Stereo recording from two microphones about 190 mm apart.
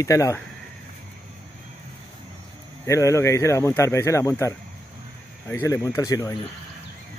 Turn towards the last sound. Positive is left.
turn(degrees=15)  # may be behind; listen again after turning